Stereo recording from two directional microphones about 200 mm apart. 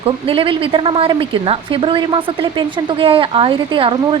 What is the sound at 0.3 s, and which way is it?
Speech, 25° right (ahead or behind).